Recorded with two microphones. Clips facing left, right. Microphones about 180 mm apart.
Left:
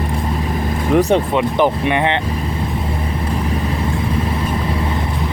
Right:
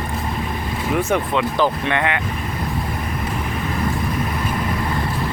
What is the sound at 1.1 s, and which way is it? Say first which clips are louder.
Speech: left 4 dB; 20° left (ahead or behind).